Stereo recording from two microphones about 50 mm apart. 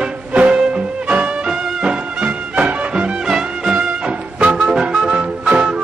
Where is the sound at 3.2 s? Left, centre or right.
Centre.